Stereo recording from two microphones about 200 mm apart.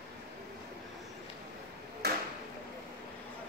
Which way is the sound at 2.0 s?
50° right (ahead or behind).